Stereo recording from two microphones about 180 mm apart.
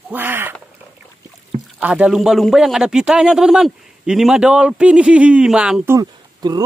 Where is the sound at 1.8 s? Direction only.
5° right (ahead or behind).